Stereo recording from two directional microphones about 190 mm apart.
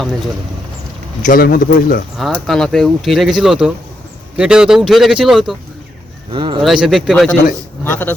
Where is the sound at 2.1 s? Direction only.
Centre (ahead or behind).